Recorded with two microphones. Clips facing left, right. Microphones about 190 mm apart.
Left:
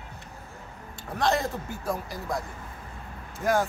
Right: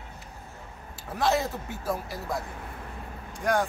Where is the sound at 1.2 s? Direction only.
5° right (ahead or behind).